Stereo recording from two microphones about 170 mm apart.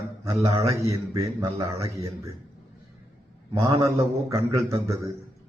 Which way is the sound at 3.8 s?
15° right (ahead or behind).